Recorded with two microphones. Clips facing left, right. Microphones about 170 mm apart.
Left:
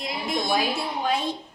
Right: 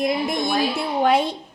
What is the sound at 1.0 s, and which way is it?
Speech, 65° right (ahead or behind).